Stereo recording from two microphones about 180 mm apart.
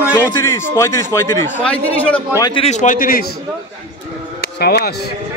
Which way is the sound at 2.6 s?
45° left (ahead or behind).